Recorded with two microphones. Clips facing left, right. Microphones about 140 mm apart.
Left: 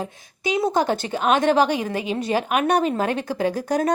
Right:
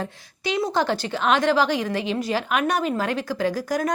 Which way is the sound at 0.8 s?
20° left (ahead or behind).